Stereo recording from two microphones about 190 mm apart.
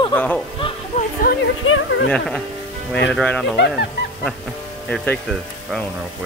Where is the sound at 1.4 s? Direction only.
85° left.